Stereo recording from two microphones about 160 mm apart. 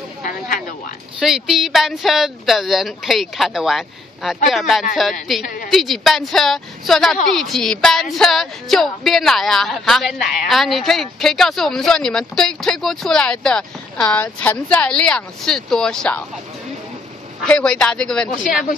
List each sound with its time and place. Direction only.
0.2 s a sound: 55° left (ahead or behind)
1.2 s speech: centre (ahead or behind)
17.4 s speech: 5° left (ahead or behind)